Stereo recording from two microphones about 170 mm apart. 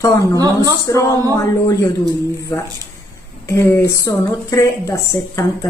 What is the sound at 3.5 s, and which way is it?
A woman's voice, 15° left (ahead or behind).